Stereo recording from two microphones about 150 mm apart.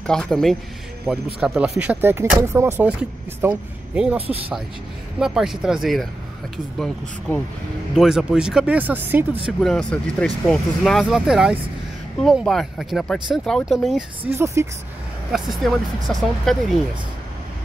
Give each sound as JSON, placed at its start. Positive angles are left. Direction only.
{"t": 0.0, "sound": "speech", "side_deg": 5}
{"t": 5.2, "sound": "speech", "side_deg": 0}
{"t": 9.6, "sound": "speech", "side_deg": 5}
{"t": 14.3, "sound": "speech", "side_deg": -20}
{"t": 15.3, "sound": "speech", "side_deg": 0}